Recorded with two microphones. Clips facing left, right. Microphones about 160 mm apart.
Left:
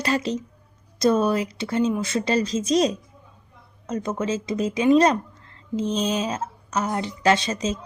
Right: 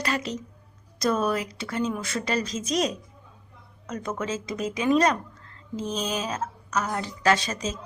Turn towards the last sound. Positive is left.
turn(degrees=25)  # may be behind; listen again after turning